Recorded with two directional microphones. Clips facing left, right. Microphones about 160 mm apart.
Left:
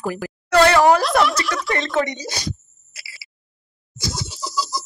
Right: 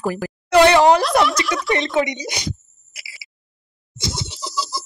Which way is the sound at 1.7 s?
20° right (ahead or behind).